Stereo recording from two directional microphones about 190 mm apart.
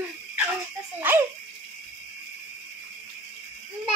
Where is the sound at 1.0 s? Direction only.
10° right (ahead or behind).